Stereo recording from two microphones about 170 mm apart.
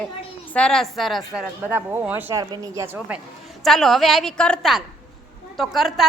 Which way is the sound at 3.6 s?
Centre (ahead or behind).